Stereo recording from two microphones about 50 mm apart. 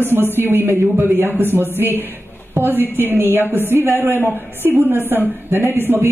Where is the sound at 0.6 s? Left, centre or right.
Right.